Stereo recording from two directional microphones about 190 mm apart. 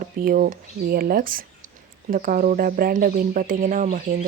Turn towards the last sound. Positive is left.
turn(degrees=-45)  # may be behind; listen again after turning